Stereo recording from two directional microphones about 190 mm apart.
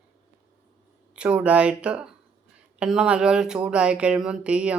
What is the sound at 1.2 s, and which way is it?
Speech, 5° right (ahead or behind).